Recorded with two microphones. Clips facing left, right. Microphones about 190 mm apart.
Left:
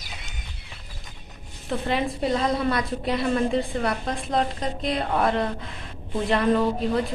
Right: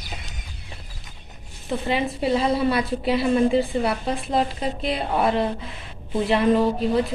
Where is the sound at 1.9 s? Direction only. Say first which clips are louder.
Right 2 dB; 5° right (ahead or behind).